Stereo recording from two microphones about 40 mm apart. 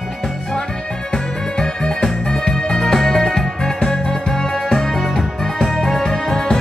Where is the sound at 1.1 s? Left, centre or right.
Centre.